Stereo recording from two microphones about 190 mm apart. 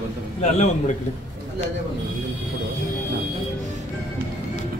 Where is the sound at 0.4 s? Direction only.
35° left (ahead or behind).